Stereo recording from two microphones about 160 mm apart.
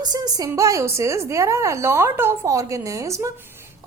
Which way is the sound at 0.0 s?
25° right (ahead or behind).